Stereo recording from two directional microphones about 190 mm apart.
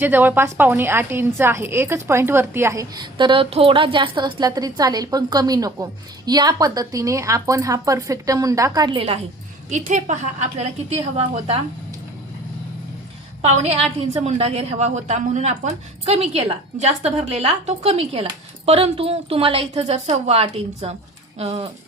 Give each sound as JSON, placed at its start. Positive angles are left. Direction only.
{"t": 0.0, "sound": "a woman's voice", "side_deg": -10}
{"t": 13.4, "sound": "speech", "side_deg": -35}